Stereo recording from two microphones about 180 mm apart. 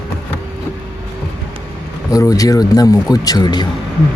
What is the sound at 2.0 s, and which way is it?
Speech, 20° left (ahead or behind).